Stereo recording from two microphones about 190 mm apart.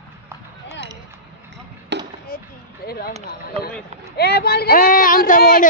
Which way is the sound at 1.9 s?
65° right (ahead or behind).